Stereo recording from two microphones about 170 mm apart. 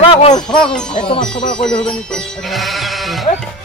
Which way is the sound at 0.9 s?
30° left (ahead or behind).